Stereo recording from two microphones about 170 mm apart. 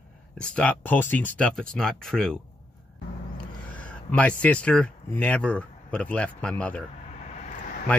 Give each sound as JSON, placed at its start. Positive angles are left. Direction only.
{"t": 0.4, "sound": "speech", "side_deg": 5}
{"t": 3.3, "sound": "speech", "side_deg": 10}
{"t": 7.2, "sound": "vehicle", "side_deg": 40}